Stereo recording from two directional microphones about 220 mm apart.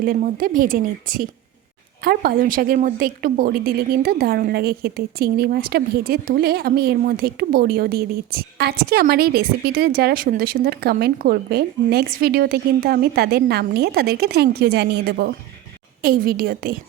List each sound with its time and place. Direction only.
0.0 s a woman's voice: 40° right (ahead or behind)